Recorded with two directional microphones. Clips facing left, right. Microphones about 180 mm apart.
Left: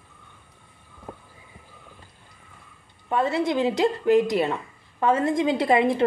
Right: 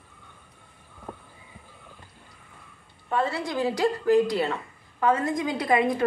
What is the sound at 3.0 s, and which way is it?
A woman's voice, 20° left (ahead or behind).